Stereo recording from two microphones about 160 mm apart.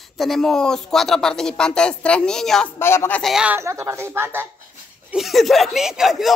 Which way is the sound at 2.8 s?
15° left (ahead or behind).